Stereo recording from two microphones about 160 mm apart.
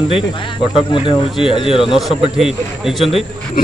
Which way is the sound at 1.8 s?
Centre (ahead or behind).